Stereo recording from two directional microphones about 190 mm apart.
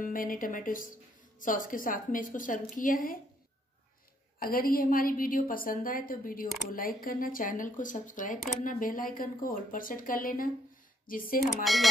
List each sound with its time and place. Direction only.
0.0 s speech: 45° left (ahead or behind)
4.4 s speech: 50° left (ahead or behind)
11.6 s speech: centre (ahead or behind)